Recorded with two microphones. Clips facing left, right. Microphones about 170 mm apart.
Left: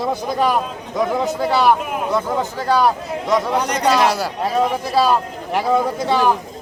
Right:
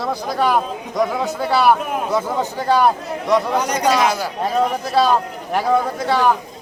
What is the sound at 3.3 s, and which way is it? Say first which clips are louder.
Speech: right 1 dB; 5° right (ahead or behind).